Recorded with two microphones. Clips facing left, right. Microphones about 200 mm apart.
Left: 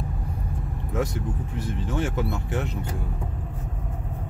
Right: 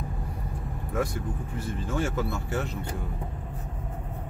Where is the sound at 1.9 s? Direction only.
20° left (ahead or behind).